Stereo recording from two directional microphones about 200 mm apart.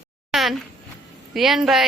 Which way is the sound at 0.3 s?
Centre (ahead or behind).